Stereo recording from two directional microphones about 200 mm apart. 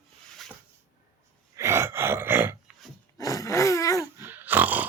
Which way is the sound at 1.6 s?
10° right (ahead or behind).